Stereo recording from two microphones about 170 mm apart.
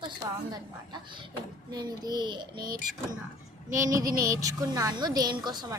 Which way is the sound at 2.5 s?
60° right (ahead or behind).